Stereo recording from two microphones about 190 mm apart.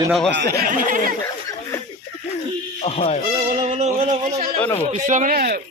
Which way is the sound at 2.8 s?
30° left (ahead or behind).